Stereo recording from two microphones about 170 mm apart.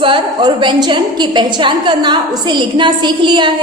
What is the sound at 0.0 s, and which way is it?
A woman's voice, 30° right (ahead or behind).